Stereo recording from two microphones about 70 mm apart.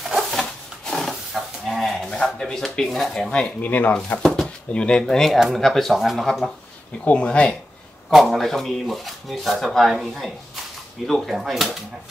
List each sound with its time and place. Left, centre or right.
0.0 s a sound: centre
3.6 s speech: left
4.7 s speech: centre
7.1 s speech: centre
8.1 s speech: centre